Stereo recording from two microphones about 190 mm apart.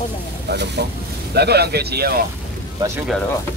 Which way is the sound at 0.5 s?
60° right (ahead or behind).